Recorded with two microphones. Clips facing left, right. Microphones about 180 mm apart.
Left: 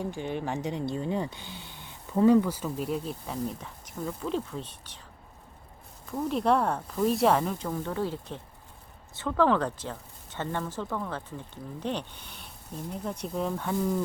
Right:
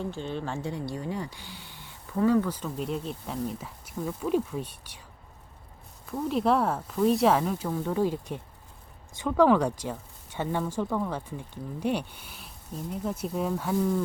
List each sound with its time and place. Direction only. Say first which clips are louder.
0.0 s speech: left 1 dB; 15° left (ahead or behind); by 4.9 s 10° right (ahead or behind)
6.1 s speech: even; centre (ahead or behind)